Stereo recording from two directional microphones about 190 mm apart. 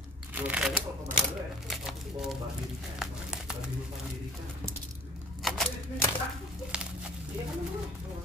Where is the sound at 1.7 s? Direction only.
Centre (ahead or behind).